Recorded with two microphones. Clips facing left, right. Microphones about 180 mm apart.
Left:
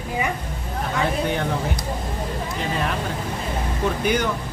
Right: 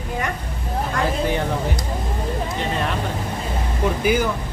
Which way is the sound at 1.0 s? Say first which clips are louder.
Right 1 dB; centre (ahead or behind).